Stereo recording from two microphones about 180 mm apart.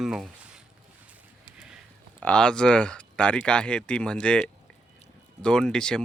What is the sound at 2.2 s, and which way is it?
Speech, 5° left (ahead or behind).